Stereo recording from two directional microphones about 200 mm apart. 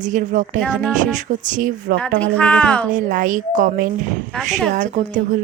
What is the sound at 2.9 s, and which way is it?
Speech, 40° right (ahead or behind).